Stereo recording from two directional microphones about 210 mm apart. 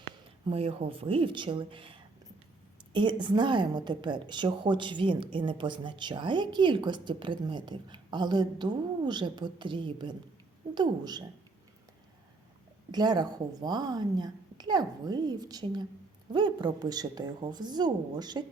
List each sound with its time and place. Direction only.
0.4 s a woman's voice: 25° right (ahead or behind)
12.9 s a woman's voice: 20° right (ahead or behind)